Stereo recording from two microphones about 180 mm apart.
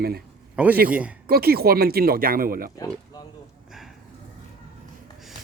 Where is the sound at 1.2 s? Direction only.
60° right (ahead or behind).